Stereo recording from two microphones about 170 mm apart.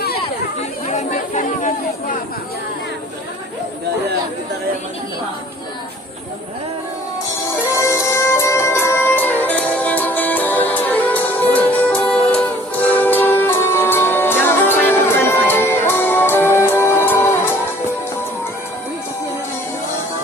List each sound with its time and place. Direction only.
0.9 s chatter: 45° left (ahead or behind)
7.8 s music: 15° left (ahead or behind)